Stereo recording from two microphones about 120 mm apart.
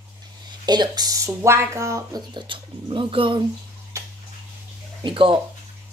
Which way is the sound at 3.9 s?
25° right (ahead or behind).